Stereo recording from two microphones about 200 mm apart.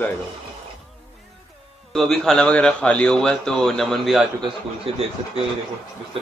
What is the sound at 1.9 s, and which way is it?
A man's voice, centre (ahead or behind).